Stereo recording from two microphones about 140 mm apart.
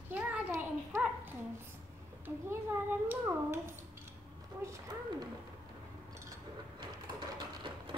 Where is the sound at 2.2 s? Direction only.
15° right (ahead or behind).